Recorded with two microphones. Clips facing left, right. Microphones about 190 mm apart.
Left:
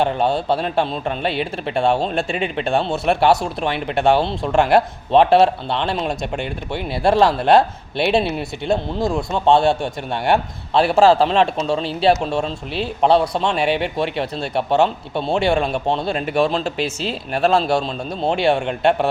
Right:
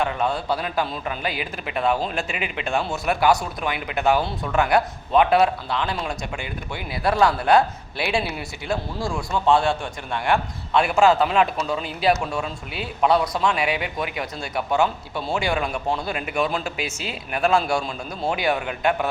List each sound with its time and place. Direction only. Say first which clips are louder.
0.2 s a man's voice: left 5 dB; 25° left (ahead or behind)
6.3 s speech: left 6 dB; 65° left (ahead or behind)
6.9 s a man's voice: left 4 dB; 25° left (ahead or behind)